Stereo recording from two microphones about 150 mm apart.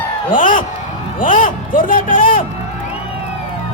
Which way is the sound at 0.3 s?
60° left (ahead or behind).